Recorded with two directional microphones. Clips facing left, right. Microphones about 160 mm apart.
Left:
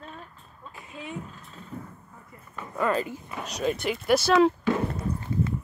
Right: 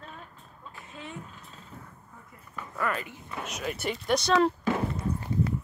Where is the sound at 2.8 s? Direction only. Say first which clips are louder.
Left 6 dB; 30° left (ahead or behind).